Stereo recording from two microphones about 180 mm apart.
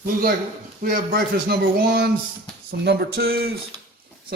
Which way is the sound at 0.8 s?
50° right (ahead or behind).